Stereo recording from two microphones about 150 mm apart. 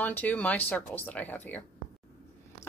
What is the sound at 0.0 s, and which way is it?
A woman's voice, 10° left (ahead or behind).